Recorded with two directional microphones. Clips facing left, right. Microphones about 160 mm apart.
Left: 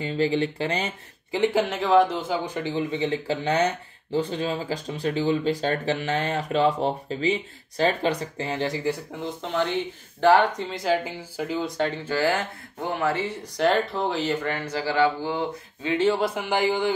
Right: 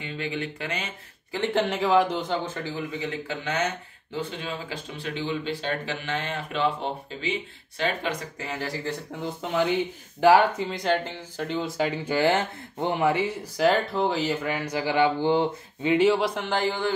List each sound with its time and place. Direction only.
0.0 s speech: 35° left (ahead or behind)
1.3 s speech: 15° left (ahead or behind)
1.6 s speech: centre (ahead or behind); by 8.9 s 20° left (ahead or behind)
9.1 s speech: 5° right (ahead or behind)
12.0 s speech: 15° right (ahead or behind)
16.3 s speech: 10° left (ahead or behind)